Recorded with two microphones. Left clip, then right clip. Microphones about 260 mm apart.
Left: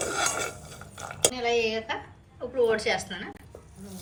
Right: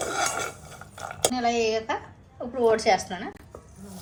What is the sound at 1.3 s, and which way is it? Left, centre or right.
A woman's voice, right.